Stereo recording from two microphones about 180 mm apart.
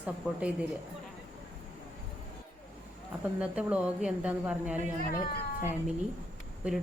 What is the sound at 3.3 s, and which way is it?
A woman's voice, 5° right (ahead or behind).